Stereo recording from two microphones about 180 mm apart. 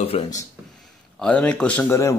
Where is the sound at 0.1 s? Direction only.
35° left (ahead or behind).